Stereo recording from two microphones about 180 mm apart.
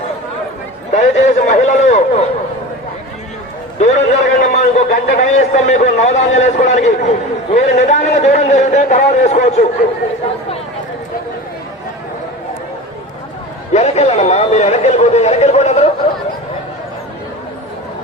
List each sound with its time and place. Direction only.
0.9 s a sound: 40° left (ahead or behind)
3.8 s a man's voice: 40° left (ahead or behind)
13.7 s speech: 40° left (ahead or behind)